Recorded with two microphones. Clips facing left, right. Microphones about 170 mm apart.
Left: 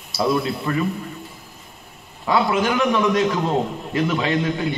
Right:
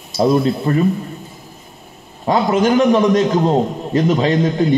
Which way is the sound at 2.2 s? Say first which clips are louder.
Right 5 dB; 45° right (ahead or behind).